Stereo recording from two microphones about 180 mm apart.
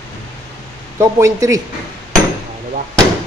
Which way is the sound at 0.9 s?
15° right (ahead or behind).